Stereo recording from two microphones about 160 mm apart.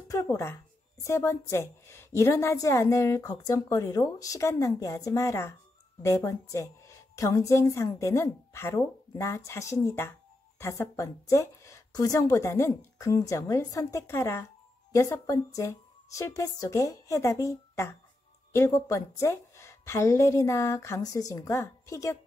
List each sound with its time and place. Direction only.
0.1 s a woman's voice: 20° left (ahead or behind)